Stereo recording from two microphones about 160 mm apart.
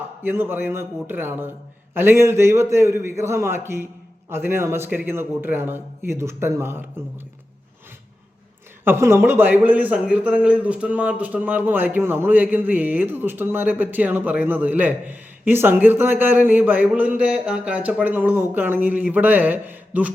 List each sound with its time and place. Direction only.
0.2 s a man's voice: 15° right (ahead or behind)
8.8 s a man's voice: 15° right (ahead or behind)